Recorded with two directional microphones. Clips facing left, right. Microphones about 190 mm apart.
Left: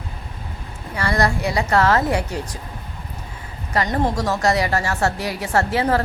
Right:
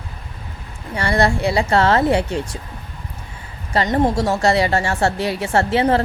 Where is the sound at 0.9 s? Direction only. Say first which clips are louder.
Right 3 dB; 30° right (ahead or behind).